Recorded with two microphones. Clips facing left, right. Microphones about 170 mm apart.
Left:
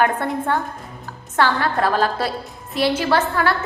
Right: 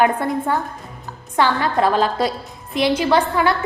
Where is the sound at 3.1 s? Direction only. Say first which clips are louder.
Right 2 dB; 15° right (ahead or behind).